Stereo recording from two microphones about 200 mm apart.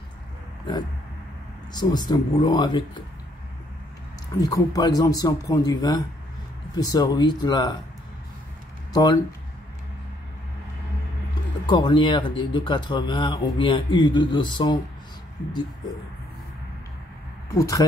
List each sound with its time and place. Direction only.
1.7 s speech: 20° left (ahead or behind)
4.4 s speech: 20° left (ahead or behind)
8.9 s speech: 20° left (ahead or behind)
11.6 s speech: 20° left (ahead or behind)
17.6 s speech: 15° left (ahead or behind)